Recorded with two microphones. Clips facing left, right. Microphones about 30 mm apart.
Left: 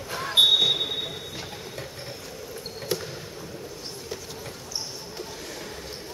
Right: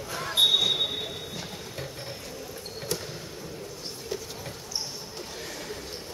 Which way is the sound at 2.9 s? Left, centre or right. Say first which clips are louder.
Left 4 dB; left.